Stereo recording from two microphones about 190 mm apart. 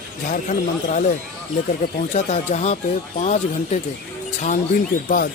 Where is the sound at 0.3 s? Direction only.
40° left (ahead or behind).